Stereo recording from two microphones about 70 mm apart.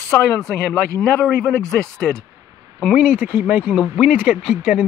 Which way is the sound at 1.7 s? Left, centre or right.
Centre.